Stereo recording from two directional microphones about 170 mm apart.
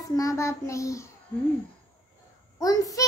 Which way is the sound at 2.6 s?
20° left (ahead or behind).